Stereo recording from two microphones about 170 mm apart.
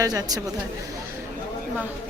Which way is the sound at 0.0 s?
20° right (ahead or behind).